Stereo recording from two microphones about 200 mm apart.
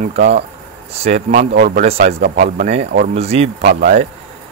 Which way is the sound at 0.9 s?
35° right (ahead or behind).